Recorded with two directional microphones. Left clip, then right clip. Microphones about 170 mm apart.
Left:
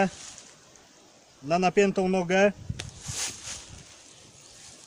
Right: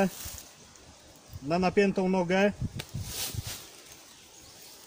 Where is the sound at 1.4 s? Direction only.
25° left (ahead or behind).